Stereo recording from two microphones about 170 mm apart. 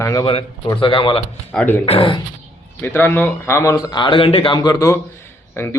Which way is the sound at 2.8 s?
10° left (ahead or behind).